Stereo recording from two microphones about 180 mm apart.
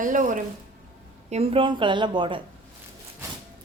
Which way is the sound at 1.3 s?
30° right (ahead or behind).